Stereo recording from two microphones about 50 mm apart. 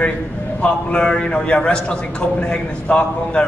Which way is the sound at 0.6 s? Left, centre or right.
Left.